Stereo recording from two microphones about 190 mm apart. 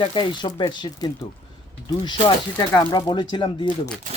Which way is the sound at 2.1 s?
20° left (ahead or behind).